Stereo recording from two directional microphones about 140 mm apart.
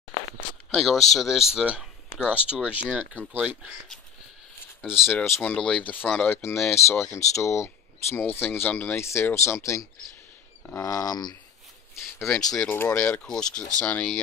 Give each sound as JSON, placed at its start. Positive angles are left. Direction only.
{"t": 0.7, "sound": "speech", "side_deg": 0}
{"t": 5.0, "sound": "speech", "side_deg": 15}
{"t": 12.2, "sound": "speech", "side_deg": 5}
{"t": 12.6, "sound": "speech", "side_deg": 15}